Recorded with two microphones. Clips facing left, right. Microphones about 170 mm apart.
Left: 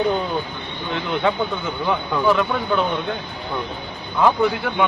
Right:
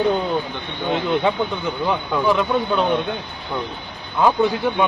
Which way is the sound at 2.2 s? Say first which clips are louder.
Even; 20° right (ahead or behind).